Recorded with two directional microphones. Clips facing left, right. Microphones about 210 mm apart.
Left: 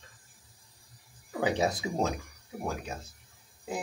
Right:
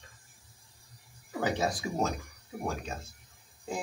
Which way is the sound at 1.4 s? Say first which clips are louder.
Left 2 dB; 20° left (ahead or behind).